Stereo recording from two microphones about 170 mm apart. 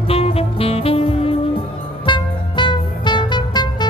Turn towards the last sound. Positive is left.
turn(degrees=25)  # may be behind; listen again after turning